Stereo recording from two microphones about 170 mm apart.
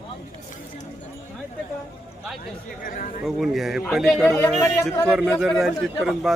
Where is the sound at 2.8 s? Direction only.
55° left (ahead or behind).